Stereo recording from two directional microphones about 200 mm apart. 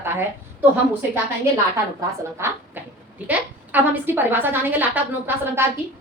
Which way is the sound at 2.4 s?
10° right (ahead or behind).